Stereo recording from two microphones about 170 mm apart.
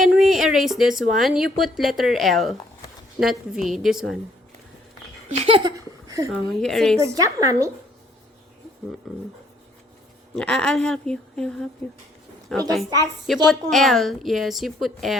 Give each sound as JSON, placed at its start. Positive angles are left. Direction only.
{"t": 0.0, "sound": "a woman's voice", "side_deg": 0}
{"t": 5.4, "sound": "speech", "side_deg": -30}
{"t": 6.6, "sound": "a woman's voice", "side_deg": 5}
{"t": 7.0, "sound": "speech", "side_deg": -20}
{"t": 10.3, "sound": "a woman's voice", "side_deg": 5}